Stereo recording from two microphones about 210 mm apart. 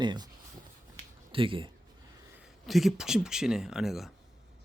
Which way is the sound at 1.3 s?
25° right (ahead or behind).